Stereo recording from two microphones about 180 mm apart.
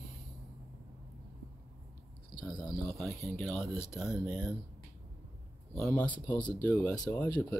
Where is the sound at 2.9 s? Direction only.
Centre (ahead or behind).